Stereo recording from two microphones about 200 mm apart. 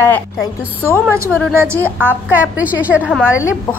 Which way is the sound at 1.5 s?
10° right (ahead or behind).